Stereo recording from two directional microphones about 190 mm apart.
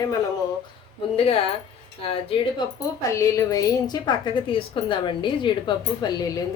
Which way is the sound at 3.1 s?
15° left (ahead or behind).